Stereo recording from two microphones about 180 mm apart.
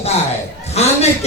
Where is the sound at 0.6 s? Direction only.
35° left (ahead or behind).